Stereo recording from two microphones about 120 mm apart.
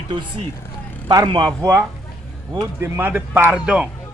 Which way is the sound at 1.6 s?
25° right (ahead or behind).